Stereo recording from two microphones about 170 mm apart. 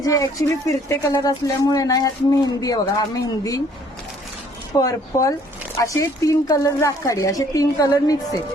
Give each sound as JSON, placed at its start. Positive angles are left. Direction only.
{"t": 0.0, "sound": "speech", "side_deg": 20}
{"t": 4.8, "sound": "speech", "side_deg": 20}